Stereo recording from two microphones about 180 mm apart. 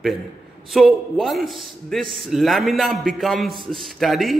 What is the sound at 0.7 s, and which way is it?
A man's voice, centre (ahead or behind).